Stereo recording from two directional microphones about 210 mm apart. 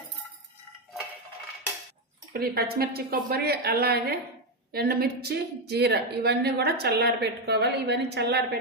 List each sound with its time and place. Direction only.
2.3 s a woman's voice: 45° right (ahead or behind)